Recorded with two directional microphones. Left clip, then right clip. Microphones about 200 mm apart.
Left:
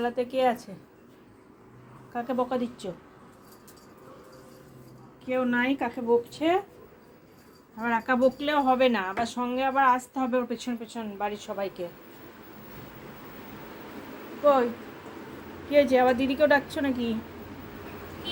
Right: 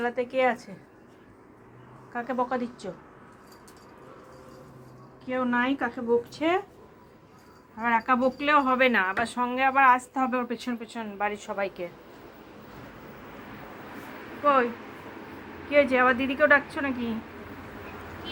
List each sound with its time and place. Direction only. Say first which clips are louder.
0.0 s a woman's voice: even; 10° left (ahead or behind)
2.1 s a woman's voice: even; 10° left (ahead or behind)
5.3 s speech: even; 5° left (ahead or behind)
7.8 s speech: right 1 dB; 5° right (ahead or behind)
14.4 s speech: left 1 dB; 5° right (ahead or behind)
15.7 s speech: even; centre (ahead or behind)